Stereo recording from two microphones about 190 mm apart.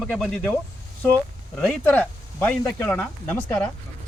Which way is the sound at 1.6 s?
5° left (ahead or behind).